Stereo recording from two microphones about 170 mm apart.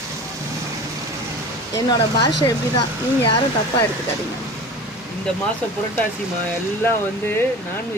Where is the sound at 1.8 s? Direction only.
25° left (ahead or behind).